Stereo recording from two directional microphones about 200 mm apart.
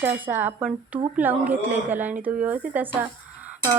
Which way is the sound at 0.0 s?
10° right (ahead or behind).